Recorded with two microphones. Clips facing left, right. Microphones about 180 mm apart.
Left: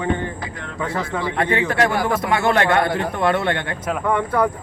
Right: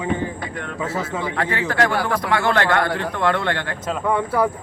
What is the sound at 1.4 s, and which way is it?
A man's voice, 25° left (ahead or behind).